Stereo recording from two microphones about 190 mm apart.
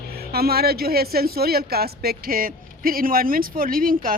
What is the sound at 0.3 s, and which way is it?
Speech, 55° right (ahead or behind).